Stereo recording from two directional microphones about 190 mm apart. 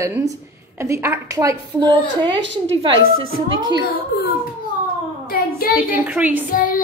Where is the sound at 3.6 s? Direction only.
25° right (ahead or behind).